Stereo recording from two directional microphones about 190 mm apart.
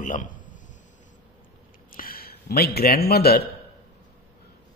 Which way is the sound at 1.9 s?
50° left (ahead or behind).